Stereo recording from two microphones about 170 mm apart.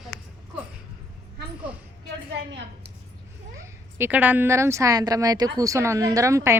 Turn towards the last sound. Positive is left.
turn(degrees=-15)  # may be behind; listen again after turning